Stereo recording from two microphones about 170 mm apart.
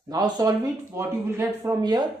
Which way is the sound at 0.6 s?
15° right (ahead or behind).